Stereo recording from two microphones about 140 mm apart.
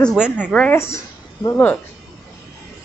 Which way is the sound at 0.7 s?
20° left (ahead or behind).